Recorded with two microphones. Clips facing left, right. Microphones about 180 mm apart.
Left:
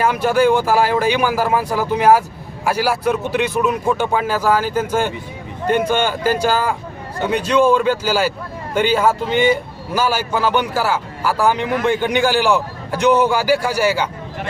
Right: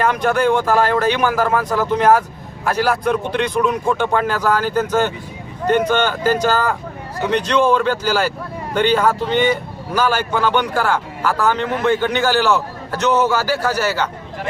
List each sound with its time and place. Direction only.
0.0 s a man's voice: 10° left (ahead or behind)